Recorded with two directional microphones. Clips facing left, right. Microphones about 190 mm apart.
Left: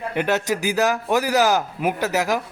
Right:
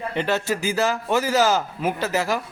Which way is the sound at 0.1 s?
15° left (ahead or behind).